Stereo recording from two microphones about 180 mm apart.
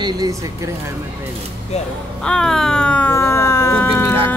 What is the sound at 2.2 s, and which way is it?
Speech, 5° left (ahead or behind).